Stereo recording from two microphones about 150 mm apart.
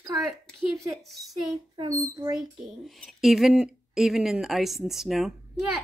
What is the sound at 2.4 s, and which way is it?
Speech, centre (ahead or behind).